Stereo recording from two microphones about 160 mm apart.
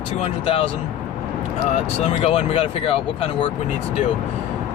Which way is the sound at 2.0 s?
40° left (ahead or behind).